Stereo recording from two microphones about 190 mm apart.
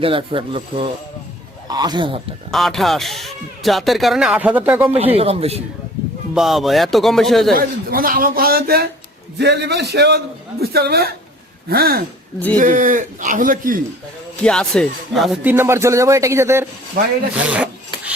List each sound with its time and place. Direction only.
0.0 s speech: 30° right (ahead or behind)
2.5 s speech: centre (ahead or behind)
5.1 s speech: 30° right (ahead or behind)
6.3 s speech: centre (ahead or behind)
7.5 s a man's voice: 50° right (ahead or behind)
14.4 s speech: 5° left (ahead or behind)
15.5 s speech: 15° right (ahead or behind)
17.4 s filing: 5° right (ahead or behind)